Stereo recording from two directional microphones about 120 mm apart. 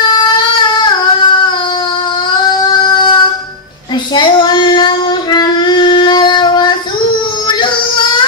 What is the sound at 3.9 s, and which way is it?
Child singing, 40° left (ahead or behind).